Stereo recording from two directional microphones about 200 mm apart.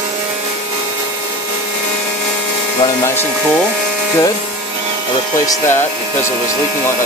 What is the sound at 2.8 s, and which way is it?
Speech, 15° left (ahead or behind).